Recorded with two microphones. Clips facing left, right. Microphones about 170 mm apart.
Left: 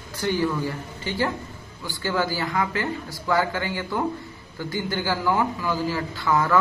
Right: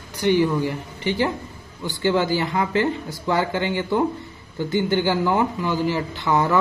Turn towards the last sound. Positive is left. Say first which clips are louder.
# right 2 dB
turn(degrees=-20)  # may be behind; listen again after turning